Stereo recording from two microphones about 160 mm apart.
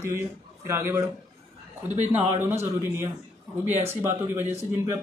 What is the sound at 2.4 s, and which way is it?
Speech, 15° right (ahead or behind).